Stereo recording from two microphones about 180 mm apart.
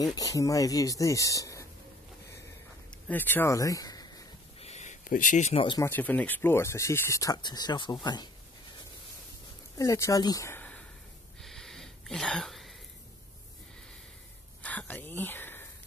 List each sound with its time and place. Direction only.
0.0 s speech: 20° left (ahead or behind)
3.1 s speech: 10° left (ahead or behind)
4.6 s a sound: 40° left (ahead or behind)
5.5 s speech: 25° left (ahead or behind)
5.9 s speech: 10° left (ahead or behind)
9.8 s speech: 15° left (ahead or behind)
11.4 s a sound: centre (ahead or behind)
14.6 s speech: 10° left (ahead or behind)